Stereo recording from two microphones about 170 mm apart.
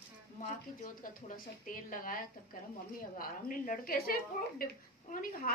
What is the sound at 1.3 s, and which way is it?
Speech, 55° left (ahead or behind).